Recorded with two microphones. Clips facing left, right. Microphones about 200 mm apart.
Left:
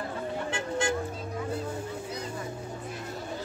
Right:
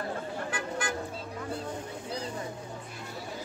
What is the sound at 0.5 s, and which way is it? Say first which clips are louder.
Music: left 6 dB; 25° left (ahead or behind).